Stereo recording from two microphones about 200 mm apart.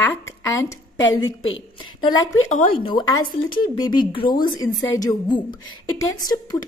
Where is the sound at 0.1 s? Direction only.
15° left (ahead or behind).